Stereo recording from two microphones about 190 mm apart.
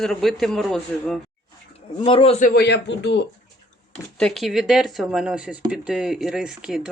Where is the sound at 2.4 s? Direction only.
55° left (ahead or behind).